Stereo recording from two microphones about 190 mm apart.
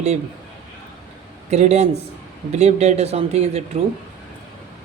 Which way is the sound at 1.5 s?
35° right (ahead or behind).